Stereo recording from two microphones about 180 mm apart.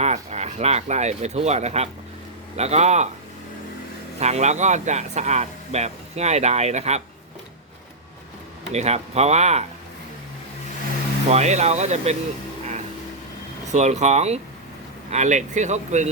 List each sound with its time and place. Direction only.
0.0 s speech: 40° right (ahead or behind)
4.2 s speech: 40° right (ahead or behind)
8.7 s speech: 35° right (ahead or behind)
11.3 s speech: 40° right (ahead or behind)
13.7 s speech: 40° right (ahead or behind)